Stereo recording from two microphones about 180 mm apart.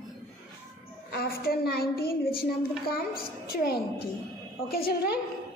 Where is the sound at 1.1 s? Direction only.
60° left (ahead or behind).